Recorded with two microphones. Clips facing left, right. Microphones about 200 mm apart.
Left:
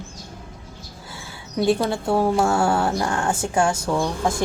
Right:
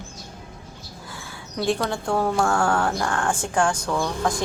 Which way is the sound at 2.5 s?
10° left (ahead or behind).